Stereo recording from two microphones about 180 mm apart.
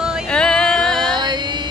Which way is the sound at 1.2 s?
25° right (ahead or behind).